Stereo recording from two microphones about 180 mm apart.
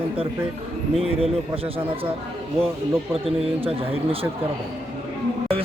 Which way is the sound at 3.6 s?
30° right (ahead or behind).